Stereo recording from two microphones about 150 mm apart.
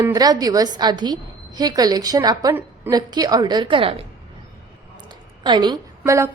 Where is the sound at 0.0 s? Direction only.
25° right (ahead or behind).